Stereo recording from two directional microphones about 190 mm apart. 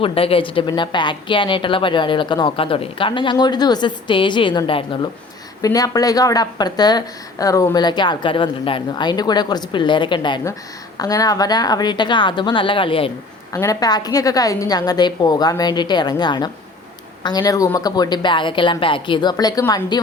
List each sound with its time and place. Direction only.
0.0 s speech: 30° left (ahead or behind)